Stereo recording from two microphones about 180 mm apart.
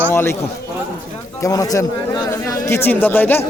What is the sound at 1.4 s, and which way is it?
Speech, 20° left (ahead or behind).